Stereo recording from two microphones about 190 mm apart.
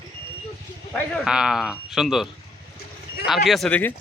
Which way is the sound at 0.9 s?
Centre (ahead or behind).